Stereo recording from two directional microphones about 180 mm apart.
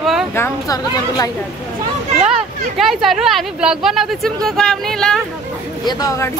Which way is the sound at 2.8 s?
Centre (ahead or behind).